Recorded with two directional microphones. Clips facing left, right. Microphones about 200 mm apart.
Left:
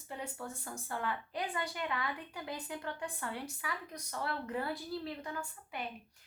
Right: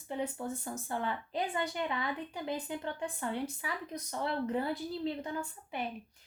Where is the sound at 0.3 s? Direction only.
20° right (ahead or behind).